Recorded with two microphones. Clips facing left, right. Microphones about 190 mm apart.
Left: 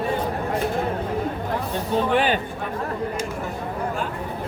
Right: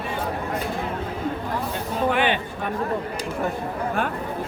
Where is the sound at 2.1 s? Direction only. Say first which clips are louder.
Left 1 dB; 35° left (ahead or behind).